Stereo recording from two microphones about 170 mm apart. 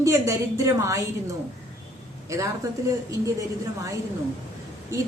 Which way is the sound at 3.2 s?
20° right (ahead or behind).